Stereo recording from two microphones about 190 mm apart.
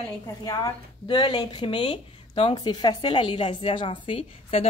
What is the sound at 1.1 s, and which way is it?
A woman's voice, 25° left (ahead or behind).